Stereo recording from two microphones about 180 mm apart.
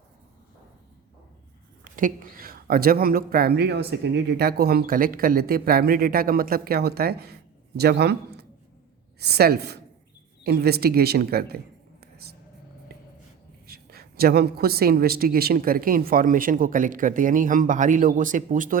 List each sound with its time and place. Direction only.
1.8 s a man's voice: 50° right (ahead or behind)
13.7 s a woman's voice: 60° right (ahead or behind)